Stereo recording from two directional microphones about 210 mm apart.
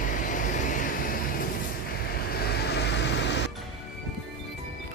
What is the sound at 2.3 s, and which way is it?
Vehicle, 50° left (ahead or behind).